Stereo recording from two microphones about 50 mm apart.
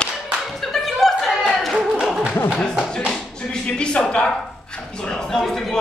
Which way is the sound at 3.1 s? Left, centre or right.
Centre.